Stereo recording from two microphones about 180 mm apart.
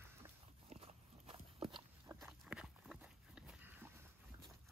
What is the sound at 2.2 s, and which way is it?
Walk, 5° right (ahead or behind).